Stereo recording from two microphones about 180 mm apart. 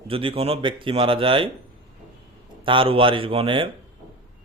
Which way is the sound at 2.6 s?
30° right (ahead or behind).